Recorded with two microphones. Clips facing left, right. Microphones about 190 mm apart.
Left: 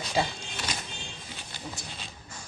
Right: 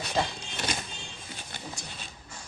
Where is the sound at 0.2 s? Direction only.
5° left (ahead or behind).